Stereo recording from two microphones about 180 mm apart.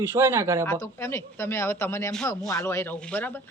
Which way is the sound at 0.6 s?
15° left (ahead or behind).